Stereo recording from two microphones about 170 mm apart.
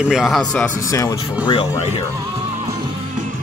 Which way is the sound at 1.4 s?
30° left (ahead or behind).